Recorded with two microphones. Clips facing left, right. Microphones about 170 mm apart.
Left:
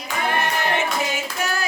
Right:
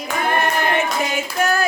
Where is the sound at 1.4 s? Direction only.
55° right (ahead or behind).